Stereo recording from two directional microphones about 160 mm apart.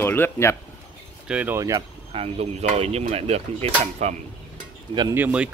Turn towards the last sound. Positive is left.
turn(degrees=-10)  # may be behind; listen again after turning